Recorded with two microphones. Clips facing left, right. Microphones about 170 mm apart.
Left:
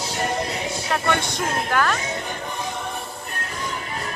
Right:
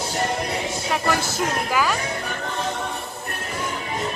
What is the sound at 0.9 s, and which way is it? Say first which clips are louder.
Music: even; 5° right (ahead or behind).